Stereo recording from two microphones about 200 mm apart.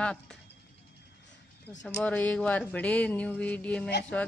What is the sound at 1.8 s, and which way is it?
A woman's voice, 5° left (ahead or behind).